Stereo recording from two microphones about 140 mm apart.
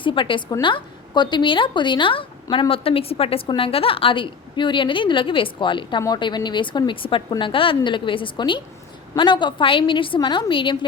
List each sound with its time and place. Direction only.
0.0 s a woman's voice: 35° left (ahead or behind)